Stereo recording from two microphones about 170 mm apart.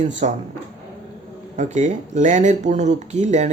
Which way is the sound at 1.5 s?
45° right (ahead or behind).